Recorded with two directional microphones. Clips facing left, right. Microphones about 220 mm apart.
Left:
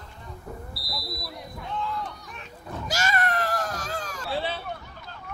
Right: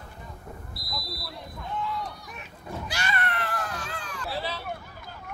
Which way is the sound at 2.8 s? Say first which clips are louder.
Left 5 dB; 40° left (ahead or behind).